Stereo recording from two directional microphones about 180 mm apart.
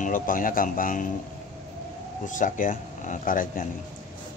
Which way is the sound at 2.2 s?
45° left (ahead or behind).